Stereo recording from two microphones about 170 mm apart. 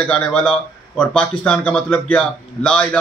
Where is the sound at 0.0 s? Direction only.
10° left (ahead or behind).